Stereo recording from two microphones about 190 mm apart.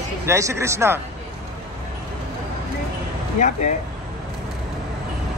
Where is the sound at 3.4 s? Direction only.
40° left (ahead or behind).